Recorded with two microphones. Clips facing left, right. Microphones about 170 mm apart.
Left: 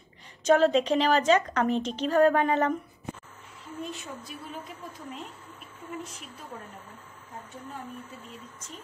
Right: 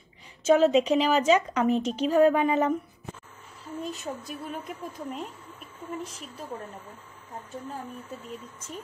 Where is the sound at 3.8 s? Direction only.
40° right (ahead or behind).